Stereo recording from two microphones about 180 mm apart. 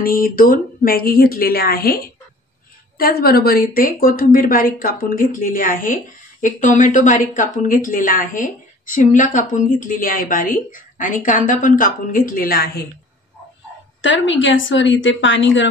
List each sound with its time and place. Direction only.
0.0 s a woman's voice: 55° left (ahead or behind)
14.0 s a woman's voice: 90° left